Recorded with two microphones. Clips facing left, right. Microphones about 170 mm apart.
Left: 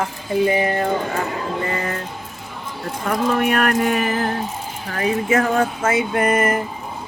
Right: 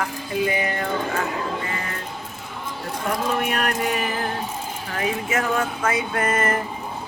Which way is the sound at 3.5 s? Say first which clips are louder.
Left 5 dB; 55° left (ahead or behind).